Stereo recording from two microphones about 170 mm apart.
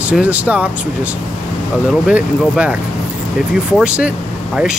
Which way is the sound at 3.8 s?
5° right (ahead or behind).